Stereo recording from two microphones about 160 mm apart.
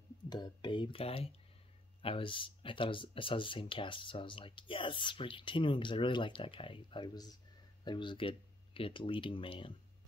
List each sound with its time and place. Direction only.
0.3 s speech: 30° left (ahead or behind)